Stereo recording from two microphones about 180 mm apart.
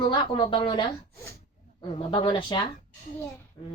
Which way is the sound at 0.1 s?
25° left (ahead or behind).